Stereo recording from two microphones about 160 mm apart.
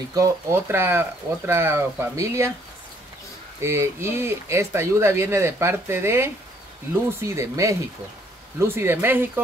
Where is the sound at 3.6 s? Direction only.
15° right (ahead or behind).